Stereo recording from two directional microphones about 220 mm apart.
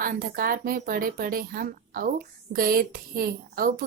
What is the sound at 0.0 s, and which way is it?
A woman's voice, 40° right (ahead or behind).